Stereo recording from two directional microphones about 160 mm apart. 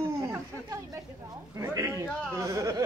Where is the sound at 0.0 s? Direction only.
15° right (ahead or behind).